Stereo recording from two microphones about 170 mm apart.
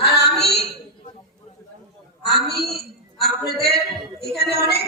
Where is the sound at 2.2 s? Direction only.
70° left (ahead or behind).